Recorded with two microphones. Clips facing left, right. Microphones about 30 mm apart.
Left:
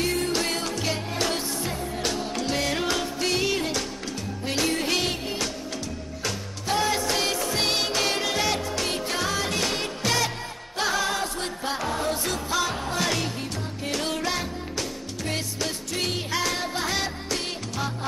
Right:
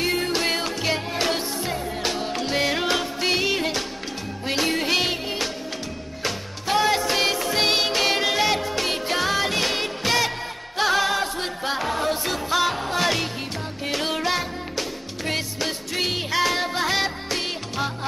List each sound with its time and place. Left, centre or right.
0.0 s music: right
4.5 s music of bollywood: right
6.2 s music: right